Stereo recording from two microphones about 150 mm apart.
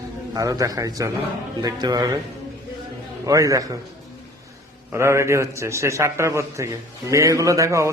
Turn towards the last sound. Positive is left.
turn(degrees=-20)  # may be behind; listen again after turning